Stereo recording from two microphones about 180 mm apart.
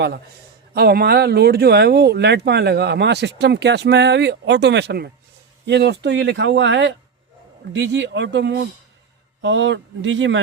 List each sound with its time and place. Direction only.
0.7 s speech: 60° right (ahead or behind); by 10.4 s 90° right